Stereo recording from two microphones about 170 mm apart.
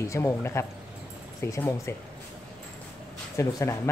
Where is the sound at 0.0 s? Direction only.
15° left (ahead or behind).